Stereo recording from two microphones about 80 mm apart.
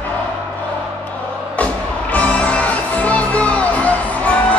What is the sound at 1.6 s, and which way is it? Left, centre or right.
Music, centre.